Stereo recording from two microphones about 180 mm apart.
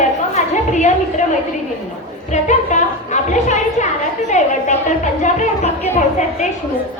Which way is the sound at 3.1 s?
40° left (ahead or behind).